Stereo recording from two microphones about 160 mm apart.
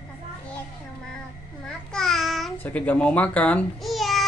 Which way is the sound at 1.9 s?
Centre (ahead or behind).